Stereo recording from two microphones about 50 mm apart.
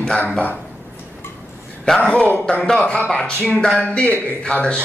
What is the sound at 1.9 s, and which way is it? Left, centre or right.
A man's voice, centre.